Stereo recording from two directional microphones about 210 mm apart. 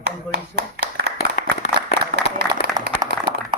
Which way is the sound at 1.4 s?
45° left (ahead or behind).